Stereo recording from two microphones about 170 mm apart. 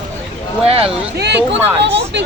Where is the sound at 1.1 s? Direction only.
80° right.